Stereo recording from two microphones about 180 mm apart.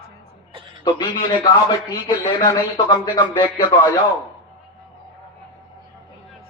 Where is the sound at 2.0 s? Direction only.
20° left (ahead or behind).